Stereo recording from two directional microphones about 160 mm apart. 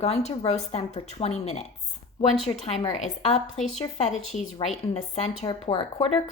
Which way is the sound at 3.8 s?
40° left (ahead or behind).